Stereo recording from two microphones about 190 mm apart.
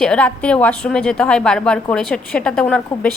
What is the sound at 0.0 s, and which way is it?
A woman's voice, 5° left (ahead or behind).